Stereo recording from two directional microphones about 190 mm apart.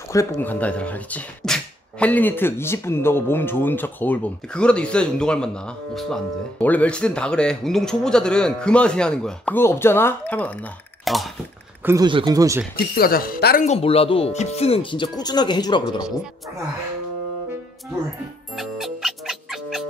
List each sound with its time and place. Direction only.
0.1 s speech: 15° left (ahead or behind); by 11.3 s centre (ahead or behind)
11.8 s speech: 15° right (ahead or behind)
12.9 s speech: 50° left (ahead or behind)
13.7 s speech: 30° left (ahead or behind)
18.6 s music: centre (ahead or behind)